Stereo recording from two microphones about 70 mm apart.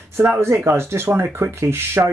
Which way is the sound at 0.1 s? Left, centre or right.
Right.